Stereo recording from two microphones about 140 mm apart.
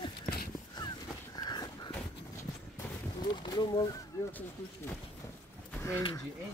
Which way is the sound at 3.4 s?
30° left (ahead or behind).